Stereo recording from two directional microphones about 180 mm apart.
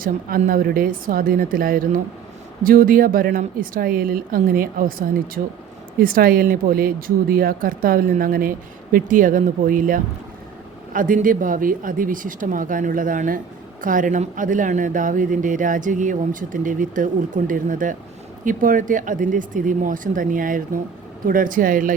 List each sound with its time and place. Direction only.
0.0 s speech: 50° right (ahead or behind)